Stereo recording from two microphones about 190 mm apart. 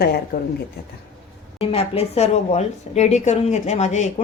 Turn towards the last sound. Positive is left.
turn(degrees=35)  # may be behind; listen again after turning